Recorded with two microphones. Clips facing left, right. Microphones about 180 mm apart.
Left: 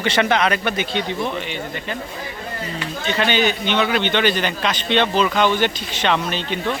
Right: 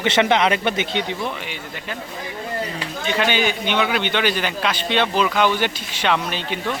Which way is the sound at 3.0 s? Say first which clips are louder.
Left 1 dB; 10° right (ahead or behind).